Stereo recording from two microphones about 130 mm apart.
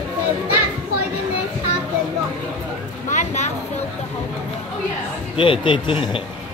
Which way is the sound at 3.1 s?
60° left (ahead or behind).